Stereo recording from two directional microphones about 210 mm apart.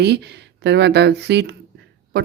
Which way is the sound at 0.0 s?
50° right (ahead or behind).